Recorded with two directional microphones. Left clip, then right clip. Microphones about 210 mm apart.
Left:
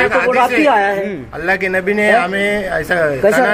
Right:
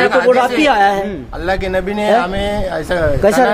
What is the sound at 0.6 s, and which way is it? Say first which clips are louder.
Speech: right 1 dB; 30° right (ahead or behind).